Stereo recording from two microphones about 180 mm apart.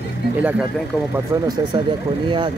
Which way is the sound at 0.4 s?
10° right (ahead or behind).